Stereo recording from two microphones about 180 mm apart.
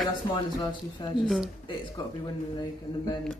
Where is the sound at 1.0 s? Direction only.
25° left (ahead or behind).